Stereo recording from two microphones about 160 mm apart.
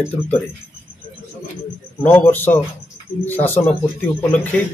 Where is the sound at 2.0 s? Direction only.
15° left (ahead or behind).